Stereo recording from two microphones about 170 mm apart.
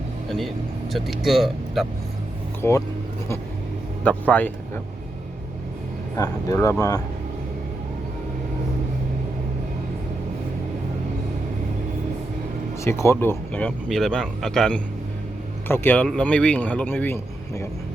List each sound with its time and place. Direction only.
0.3 s speech: centre (ahead or behind)
2.6 s speech: 15° left (ahead or behind)
4.0 s speech: 10° left (ahead or behind)
6.1 s speech: 20° left (ahead or behind)
12.8 s speech: 15° left (ahead or behind)